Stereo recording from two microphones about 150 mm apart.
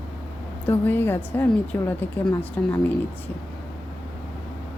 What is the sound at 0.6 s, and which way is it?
A woman's voice, 15° left (ahead or behind).